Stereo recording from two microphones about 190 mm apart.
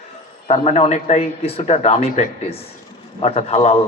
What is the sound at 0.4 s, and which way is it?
A man's voice, 35° left (ahead or behind).